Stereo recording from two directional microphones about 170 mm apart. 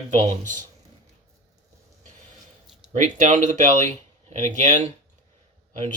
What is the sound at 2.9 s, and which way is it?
Speech, 45° right (ahead or behind).